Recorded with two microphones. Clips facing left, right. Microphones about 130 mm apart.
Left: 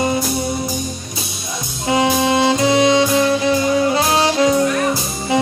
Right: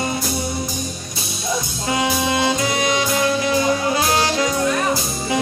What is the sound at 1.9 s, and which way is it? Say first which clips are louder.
Saxophone: left 5 dB; 25° left (ahead or behind).